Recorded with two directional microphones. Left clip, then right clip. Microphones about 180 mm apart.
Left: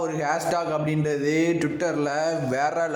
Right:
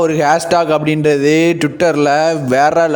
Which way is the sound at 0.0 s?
50° right (ahead or behind).